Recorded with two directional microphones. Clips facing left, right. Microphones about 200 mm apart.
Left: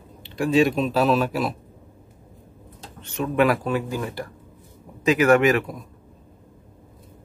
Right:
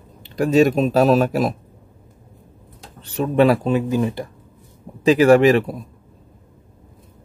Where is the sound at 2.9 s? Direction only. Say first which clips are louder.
Right 4 dB; 35° right (ahead or behind).